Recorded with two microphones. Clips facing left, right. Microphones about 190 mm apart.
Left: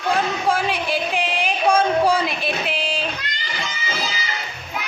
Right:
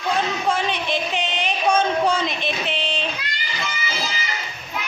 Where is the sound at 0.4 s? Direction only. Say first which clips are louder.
Left 2 dB; 5° left (ahead or behind).